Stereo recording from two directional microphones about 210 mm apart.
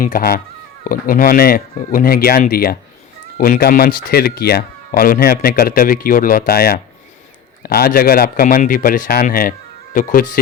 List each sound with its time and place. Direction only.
0.0 s speech: 45° left (ahead or behind)